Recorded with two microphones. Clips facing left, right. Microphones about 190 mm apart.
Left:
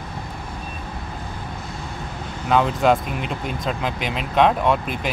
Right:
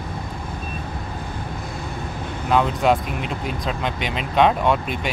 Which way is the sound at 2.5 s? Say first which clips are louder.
Left 1 dB; centre (ahead or behind).